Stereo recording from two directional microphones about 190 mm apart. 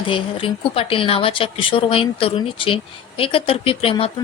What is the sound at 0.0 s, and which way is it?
Speech, 30° left (ahead or behind).